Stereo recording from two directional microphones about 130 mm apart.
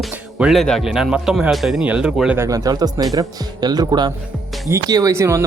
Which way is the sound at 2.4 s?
25° right (ahead or behind).